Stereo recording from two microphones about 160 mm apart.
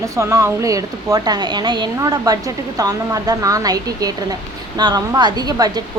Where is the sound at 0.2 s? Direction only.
20° right (ahead or behind).